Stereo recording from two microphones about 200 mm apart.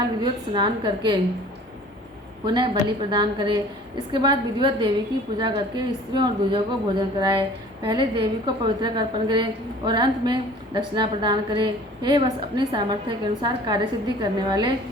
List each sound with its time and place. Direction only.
0.2 s a woman's voice: 25° right (ahead or behind)
2.5 s a woman's voice: 20° right (ahead or behind)